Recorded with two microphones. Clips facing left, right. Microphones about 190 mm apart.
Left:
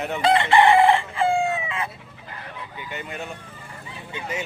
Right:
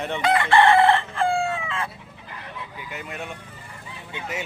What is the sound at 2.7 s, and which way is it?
Speech, centre (ahead or behind).